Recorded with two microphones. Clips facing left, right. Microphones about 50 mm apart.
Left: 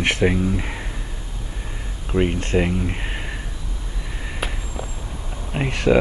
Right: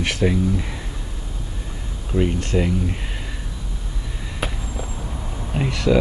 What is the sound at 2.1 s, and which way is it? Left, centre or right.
Speech, left.